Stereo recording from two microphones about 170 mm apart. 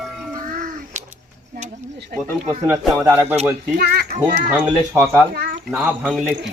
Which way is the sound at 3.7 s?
65° right (ahead or behind).